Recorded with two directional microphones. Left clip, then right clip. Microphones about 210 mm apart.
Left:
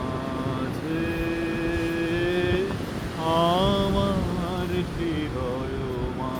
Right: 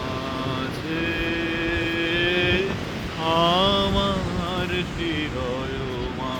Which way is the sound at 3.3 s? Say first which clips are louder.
Right 3 dB; 15° left (ahead or behind).